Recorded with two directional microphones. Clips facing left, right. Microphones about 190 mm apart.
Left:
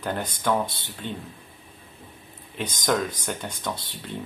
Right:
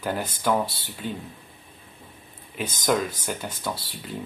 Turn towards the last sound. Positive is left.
turn(degrees=-5)  # may be behind; listen again after turning